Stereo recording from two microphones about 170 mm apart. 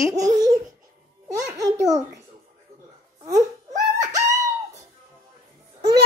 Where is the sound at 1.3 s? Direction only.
20° right (ahead or behind).